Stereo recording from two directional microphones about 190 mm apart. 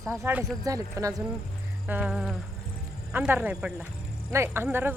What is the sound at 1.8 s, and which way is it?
Speech, 5° right (ahead or behind).